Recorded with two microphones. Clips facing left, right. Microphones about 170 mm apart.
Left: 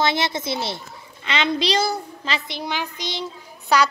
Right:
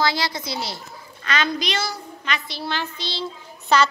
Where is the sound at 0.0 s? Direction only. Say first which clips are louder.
Left 2 dB; 25° left (ahead or behind).